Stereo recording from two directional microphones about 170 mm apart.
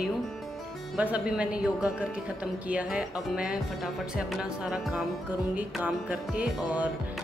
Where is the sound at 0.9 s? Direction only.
10° right (ahead or behind).